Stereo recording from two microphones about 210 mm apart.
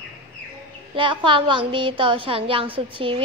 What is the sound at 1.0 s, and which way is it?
A child's voice, 25° right (ahead or behind).